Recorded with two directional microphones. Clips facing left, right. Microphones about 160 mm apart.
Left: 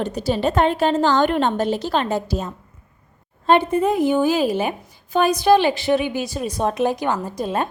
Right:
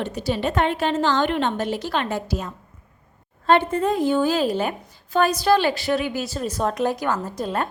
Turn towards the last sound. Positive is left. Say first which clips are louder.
# left 2 dB
turn(degrees=15)  # may be behind; listen again after turning